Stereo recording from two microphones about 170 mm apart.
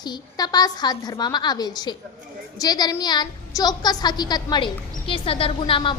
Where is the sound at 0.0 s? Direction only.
25° left (ahead or behind).